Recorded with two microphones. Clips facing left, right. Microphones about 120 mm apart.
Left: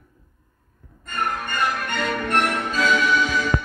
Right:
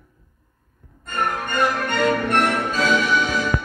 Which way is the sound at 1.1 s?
35° right (ahead or behind).